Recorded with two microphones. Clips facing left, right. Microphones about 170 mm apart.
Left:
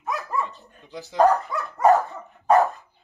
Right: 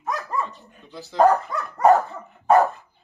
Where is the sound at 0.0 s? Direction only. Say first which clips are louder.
Even; centre (ahead or behind).